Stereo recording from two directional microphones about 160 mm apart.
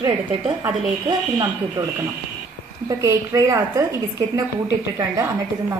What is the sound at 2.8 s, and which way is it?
A woman's voice, 20° right (ahead or behind).